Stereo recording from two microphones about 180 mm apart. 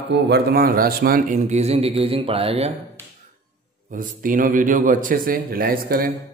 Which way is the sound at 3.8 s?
50° right (ahead or behind).